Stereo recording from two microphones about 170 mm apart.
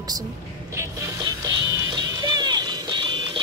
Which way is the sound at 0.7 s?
15° right (ahead or behind).